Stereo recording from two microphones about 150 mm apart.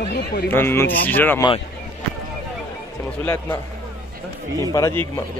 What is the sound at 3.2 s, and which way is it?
Speech, 20° left (ahead or behind).